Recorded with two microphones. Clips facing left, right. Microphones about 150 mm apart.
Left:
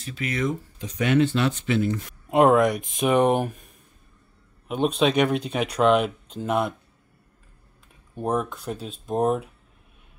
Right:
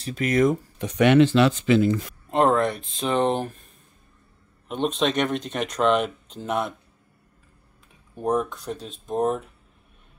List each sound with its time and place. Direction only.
0.0 s speech: 45° right (ahead or behind)
0.7 s speech: 70° right (ahead or behind); by 1.9 s 90° right
2.2 s speech: 10° left (ahead or behind)
4.6 s speech: 5° left (ahead or behind)
8.2 s speech: centre (ahead or behind)